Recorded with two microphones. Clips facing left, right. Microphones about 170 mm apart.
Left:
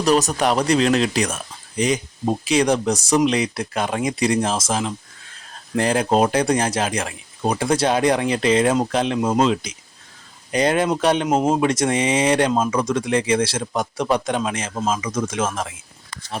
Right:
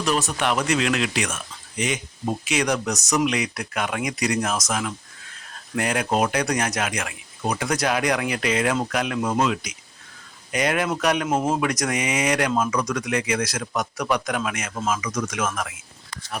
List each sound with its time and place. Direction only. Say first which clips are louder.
0.0 s speech: left 6 dB; 40° left (ahead or behind)